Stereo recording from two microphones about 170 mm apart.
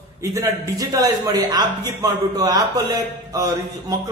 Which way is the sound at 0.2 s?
15° right (ahead or behind).